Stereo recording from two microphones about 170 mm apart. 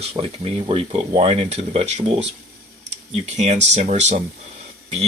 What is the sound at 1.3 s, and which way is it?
Speech, 40° right (ahead or behind).